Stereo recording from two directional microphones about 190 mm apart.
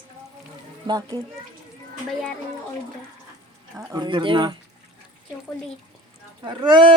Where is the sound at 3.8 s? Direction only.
20° right (ahead or behind).